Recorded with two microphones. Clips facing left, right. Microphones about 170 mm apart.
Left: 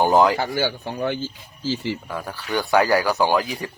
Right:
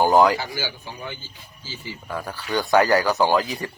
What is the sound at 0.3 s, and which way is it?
Speech, 55° left (ahead or behind).